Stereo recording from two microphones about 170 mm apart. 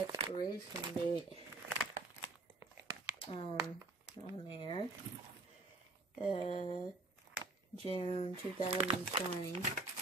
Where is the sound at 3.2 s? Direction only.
30° left (ahead or behind).